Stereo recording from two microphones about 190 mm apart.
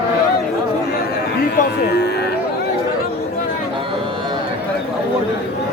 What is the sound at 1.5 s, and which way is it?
Speech, 60° left (ahead or behind).